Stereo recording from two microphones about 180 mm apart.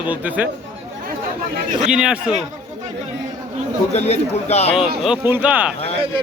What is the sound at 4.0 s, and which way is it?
Speech, 35° left (ahead or behind).